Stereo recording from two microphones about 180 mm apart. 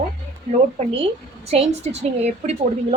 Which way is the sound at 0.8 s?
35° right (ahead or behind).